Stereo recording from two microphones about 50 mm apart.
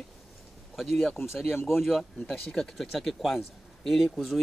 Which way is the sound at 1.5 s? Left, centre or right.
Left.